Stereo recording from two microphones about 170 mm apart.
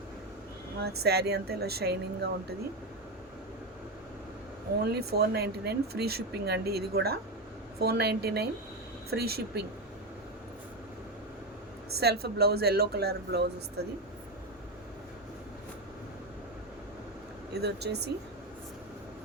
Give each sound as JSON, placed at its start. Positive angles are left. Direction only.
{"t": 0.8, "sound": "speech", "side_deg": -70}
{"t": 4.8, "sound": "speech", "side_deg": -70}
{"t": 11.9, "sound": "speech", "side_deg": -70}
{"t": 17.5, "sound": "speech", "side_deg": -70}